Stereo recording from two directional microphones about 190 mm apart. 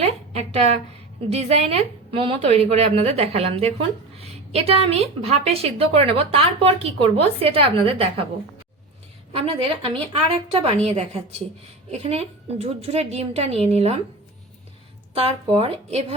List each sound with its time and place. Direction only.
0.0 s a woman's voice: 35° right (ahead or behind)
9.3 s a woman's voice: 30° right (ahead or behind)
15.1 s a woman's voice: 30° right (ahead or behind)